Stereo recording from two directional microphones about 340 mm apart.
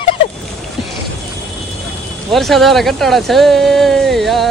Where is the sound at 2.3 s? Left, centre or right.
Centre.